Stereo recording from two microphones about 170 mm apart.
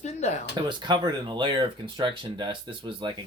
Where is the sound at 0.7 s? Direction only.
25° right (ahead or behind).